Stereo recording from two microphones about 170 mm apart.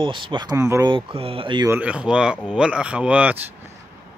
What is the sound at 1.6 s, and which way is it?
Speech, 10° right (ahead or behind).